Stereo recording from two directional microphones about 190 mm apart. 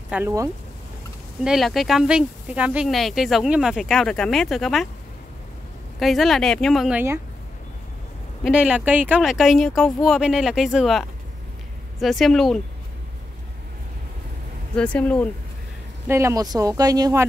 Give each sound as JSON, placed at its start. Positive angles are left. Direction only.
{"t": 0.1, "sound": "speech", "side_deg": -15}
{"t": 1.4, "sound": "speech", "side_deg": 0}
{"t": 5.9, "sound": "speech", "side_deg": 0}
{"t": 8.5, "sound": "speech", "side_deg": -5}
{"t": 14.8, "sound": "speech", "side_deg": 5}
{"t": 16.1, "sound": "speech", "side_deg": -15}